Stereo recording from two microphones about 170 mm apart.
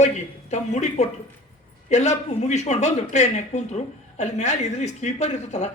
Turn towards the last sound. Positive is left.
turn(degrees=40)  # may be behind; listen again after turning